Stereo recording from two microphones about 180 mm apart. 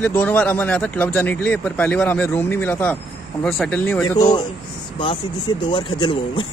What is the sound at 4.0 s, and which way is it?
Speech, 20° left (ahead or behind).